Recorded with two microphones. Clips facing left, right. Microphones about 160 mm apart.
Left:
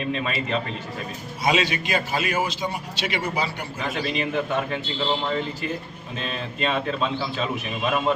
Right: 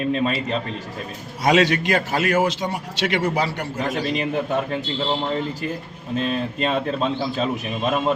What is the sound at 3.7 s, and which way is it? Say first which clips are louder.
A man's voice: right 3 dB; 40° right (ahead or behind).